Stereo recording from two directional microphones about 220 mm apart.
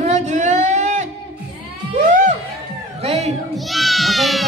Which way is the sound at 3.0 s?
30° right (ahead or behind).